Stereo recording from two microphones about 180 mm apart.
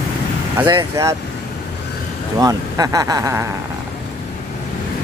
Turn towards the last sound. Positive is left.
turn(degrees=-15)  # may be behind; listen again after turning